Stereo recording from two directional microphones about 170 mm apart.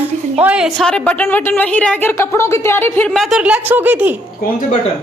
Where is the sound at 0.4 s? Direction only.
5° right (ahead or behind).